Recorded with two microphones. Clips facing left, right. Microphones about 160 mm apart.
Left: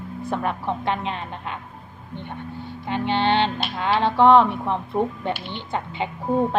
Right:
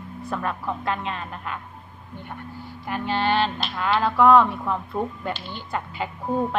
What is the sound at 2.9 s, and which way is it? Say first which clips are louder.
A woman's voice: left 2 dB; 25° left (ahead or behind).